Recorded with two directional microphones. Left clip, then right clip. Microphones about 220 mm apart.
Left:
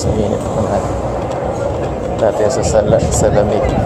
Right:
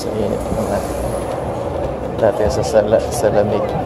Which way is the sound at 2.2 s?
Centre (ahead or behind).